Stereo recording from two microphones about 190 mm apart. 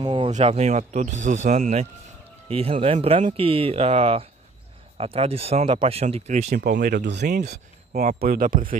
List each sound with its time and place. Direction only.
0.0 s a sound: 25° right (ahead or behind)
0.3 s speech: 35° right (ahead or behind)
6.6 s speech: 60° right (ahead or behind)
8.0 s speech: 40° right (ahead or behind)